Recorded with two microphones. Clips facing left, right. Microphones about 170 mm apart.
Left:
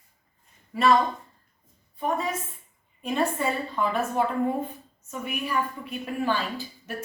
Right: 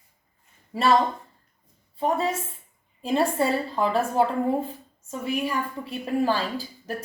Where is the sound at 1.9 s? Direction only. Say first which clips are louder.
Right 3 dB; 30° right (ahead or behind).